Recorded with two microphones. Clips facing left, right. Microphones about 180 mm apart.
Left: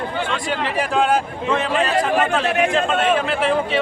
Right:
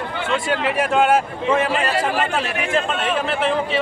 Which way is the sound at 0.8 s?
5° right (ahead or behind).